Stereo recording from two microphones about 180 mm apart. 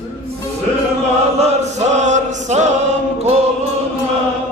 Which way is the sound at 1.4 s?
40° right (ahead or behind).